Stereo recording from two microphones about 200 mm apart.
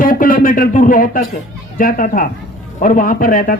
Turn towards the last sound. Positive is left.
turn(degrees=45)  # may be behind; listen again after turning